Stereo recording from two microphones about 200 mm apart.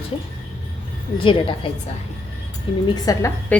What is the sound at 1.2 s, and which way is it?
Speech, 25° left (ahead or behind).